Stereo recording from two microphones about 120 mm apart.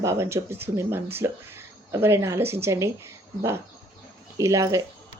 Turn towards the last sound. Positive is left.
turn(degrees=-30)  # may be behind; listen again after turning